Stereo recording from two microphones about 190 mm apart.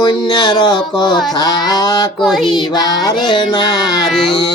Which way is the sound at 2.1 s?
Centre (ahead or behind).